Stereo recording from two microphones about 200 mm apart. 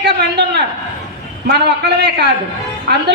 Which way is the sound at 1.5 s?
55° right (ahead or behind).